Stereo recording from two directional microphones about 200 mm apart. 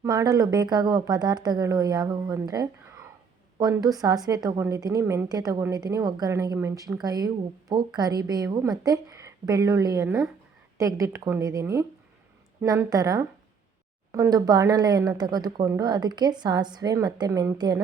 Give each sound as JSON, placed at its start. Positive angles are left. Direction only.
{"t": 0.0, "sound": "a woman's voice", "side_deg": -15}